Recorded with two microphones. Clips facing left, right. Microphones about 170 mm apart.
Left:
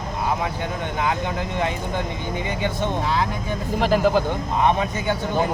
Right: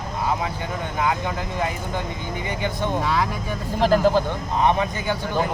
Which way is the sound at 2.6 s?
25° left (ahead or behind).